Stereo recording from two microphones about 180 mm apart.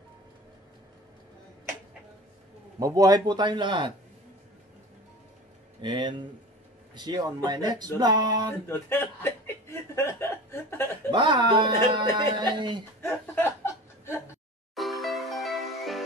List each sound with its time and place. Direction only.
2.8 s speech: 20° right (ahead or behind)
5.8 s speech: 25° right (ahead or behind)
8.6 s speech: 15° left (ahead or behind)
11.1 s speech: 25° right (ahead or behind)
13.0 s speech: 15° left (ahead or behind)
14.8 s music: centre (ahead or behind)